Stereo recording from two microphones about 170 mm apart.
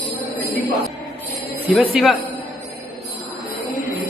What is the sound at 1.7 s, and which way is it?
Speech, 5° right (ahead or behind).